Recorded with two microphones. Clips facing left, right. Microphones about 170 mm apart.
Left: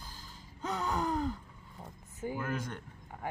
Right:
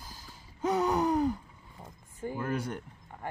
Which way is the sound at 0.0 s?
10° right (ahead or behind).